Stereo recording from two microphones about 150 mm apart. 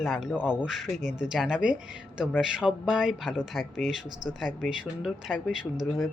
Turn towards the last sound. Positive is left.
turn(degrees=0)  # may be behind; listen again after turning